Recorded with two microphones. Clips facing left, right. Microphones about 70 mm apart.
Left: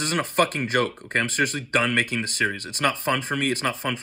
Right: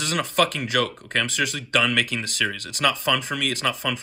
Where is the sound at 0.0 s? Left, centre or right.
Left.